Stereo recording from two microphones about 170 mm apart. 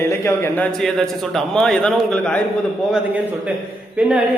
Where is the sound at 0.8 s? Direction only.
5° left (ahead or behind).